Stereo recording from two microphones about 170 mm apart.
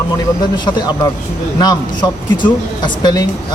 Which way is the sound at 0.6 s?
25° left (ahead or behind).